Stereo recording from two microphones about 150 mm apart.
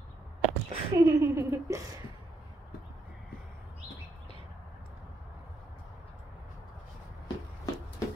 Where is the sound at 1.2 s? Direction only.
15° right (ahead or behind).